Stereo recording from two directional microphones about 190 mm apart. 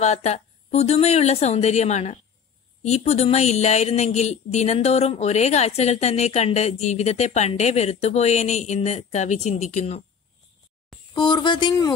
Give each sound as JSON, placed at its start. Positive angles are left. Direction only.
{"t": 0.0, "sound": "speech", "side_deg": 35}
{"t": 11.1, "sound": "speech", "side_deg": 25}